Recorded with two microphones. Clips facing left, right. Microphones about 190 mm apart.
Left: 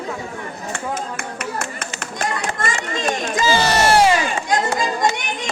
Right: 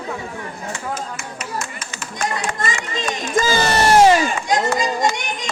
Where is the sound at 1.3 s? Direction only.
60° left (ahead or behind).